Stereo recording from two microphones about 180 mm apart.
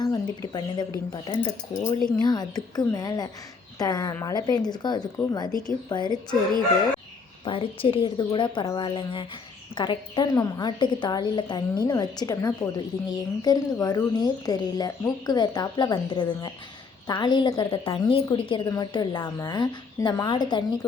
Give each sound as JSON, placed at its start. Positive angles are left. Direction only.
{"t": 0.0, "sound": "a woman's voice", "side_deg": 25}
{"t": 7.4, "sound": "a woman's voice", "side_deg": 30}